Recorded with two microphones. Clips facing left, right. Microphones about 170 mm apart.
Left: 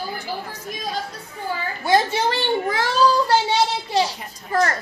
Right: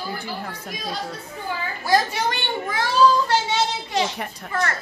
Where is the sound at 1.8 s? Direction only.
25° left (ahead or behind).